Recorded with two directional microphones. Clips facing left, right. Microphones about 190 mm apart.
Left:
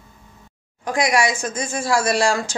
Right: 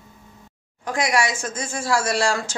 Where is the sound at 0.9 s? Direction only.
15° left (ahead or behind).